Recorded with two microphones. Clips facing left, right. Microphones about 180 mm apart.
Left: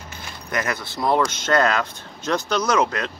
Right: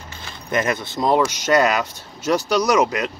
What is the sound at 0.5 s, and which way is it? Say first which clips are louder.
Speech: right 5 dB; 20° right (ahead or behind).